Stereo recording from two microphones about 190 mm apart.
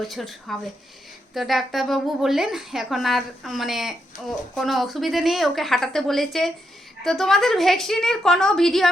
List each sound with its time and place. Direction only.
0.1 s speech: centre (ahead or behind)